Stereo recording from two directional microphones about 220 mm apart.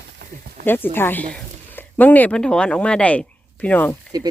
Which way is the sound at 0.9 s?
10° left (ahead or behind).